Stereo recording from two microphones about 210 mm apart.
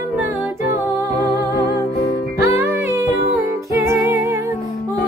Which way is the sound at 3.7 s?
15° right (ahead or behind).